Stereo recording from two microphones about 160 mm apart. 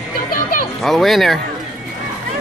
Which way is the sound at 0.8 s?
Centre (ahead or behind).